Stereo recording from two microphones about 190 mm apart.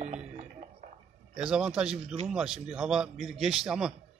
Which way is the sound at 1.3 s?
5° right (ahead or behind).